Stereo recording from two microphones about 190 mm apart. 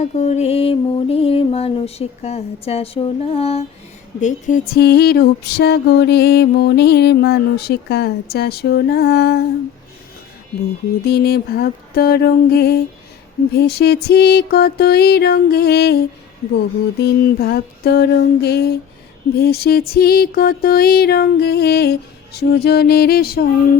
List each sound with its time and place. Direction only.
0.0 s music: 35° left (ahead or behind); by 9.4 s 55° left (ahead or behind)
11.0 s music: 55° left (ahead or behind)
17.0 s music: 55° left (ahead or behind)